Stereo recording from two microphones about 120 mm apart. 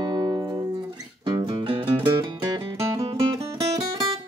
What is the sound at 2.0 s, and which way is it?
Music, 35° right (ahead or behind).